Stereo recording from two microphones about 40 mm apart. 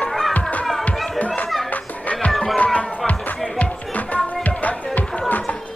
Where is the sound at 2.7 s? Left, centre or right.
Left.